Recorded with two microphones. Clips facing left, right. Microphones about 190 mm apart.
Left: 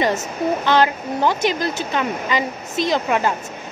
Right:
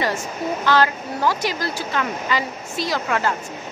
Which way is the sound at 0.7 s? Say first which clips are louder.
Even; 20° left (ahead or behind).